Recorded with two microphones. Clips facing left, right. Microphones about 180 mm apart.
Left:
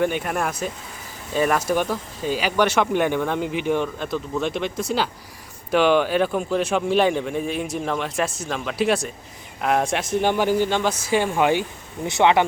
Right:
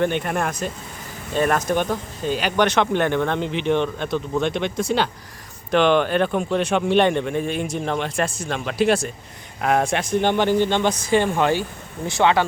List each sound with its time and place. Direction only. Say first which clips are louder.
0.0 s speech: right 1 dB; 5° left (ahead or behind); by 12.5 s 20° left (ahead or behind)